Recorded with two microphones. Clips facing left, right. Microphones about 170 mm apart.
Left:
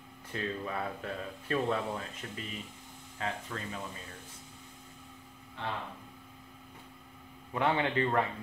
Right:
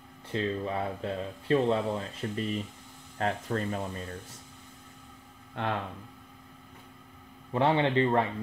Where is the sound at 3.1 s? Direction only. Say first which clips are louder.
Right 8 dB; 45° right (ahead or behind).